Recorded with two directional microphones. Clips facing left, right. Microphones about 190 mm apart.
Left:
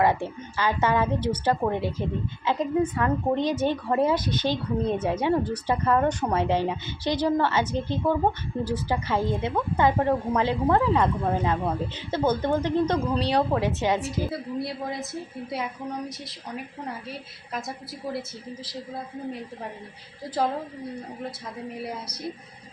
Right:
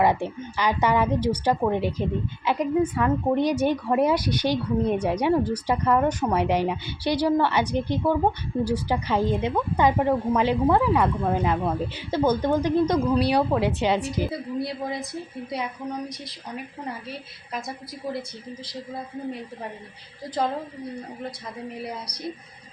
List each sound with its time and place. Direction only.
0.0 s a woman's voice: 15° right (ahead or behind)
14.0 s a woman's voice: centre (ahead or behind)
17.5 s a woman's voice: centre (ahead or behind)